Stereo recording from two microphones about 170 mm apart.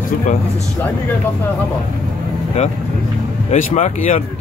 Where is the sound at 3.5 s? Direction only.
45° left (ahead or behind).